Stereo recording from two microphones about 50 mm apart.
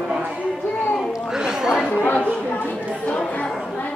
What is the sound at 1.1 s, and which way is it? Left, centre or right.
Chatter, centre.